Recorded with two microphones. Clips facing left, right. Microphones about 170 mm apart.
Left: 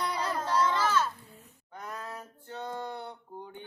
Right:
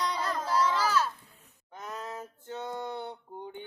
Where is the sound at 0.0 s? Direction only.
10° left (ahead or behind).